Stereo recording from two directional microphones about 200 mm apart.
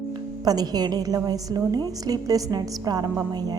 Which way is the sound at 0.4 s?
20° right (ahead or behind).